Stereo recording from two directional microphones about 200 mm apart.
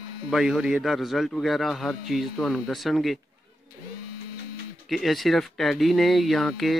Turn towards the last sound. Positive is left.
turn(degrees=0)  # may be behind; listen again after turning